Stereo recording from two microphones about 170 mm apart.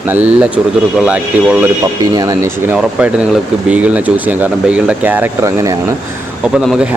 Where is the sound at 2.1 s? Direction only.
20° right (ahead or behind).